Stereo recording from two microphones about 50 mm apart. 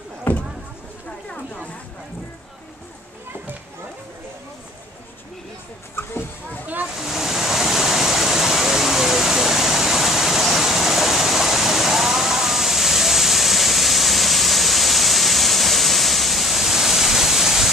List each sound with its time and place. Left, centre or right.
0.3 s vehicle: left
6.0 s a sound: left
7.0 s waterfall: centre